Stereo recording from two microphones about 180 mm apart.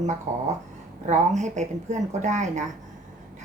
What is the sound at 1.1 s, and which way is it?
A woman's voice, 40° right (ahead or behind).